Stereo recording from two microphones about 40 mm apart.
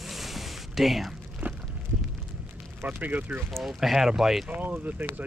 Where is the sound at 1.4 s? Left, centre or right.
Right.